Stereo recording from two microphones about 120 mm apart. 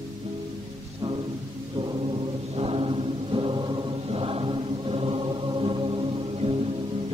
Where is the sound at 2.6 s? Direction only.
50° right (ahead or behind).